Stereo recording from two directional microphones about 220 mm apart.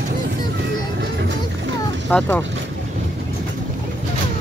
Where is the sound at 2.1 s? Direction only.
5° left (ahead or behind).